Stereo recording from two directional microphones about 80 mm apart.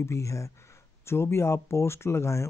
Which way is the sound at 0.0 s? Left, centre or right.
Left.